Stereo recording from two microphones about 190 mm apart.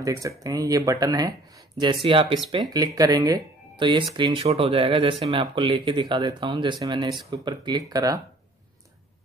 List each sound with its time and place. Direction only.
0.0 s speech: 15° right (ahead or behind)